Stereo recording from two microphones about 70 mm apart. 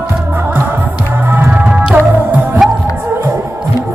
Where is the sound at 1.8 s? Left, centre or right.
Centre.